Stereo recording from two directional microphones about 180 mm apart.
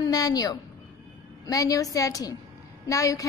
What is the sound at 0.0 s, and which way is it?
A woman's voice, 20° left (ahead or behind).